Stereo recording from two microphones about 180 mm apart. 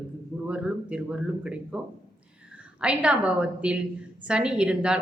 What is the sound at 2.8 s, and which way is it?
A woman's voice, 5° right (ahead or behind).